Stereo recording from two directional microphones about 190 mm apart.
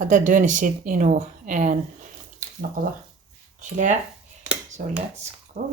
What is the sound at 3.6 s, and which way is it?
Speech, 40° right (ahead or behind).